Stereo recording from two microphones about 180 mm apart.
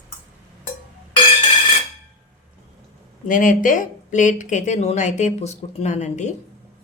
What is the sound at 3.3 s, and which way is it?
Speech, 50° left (ahead or behind).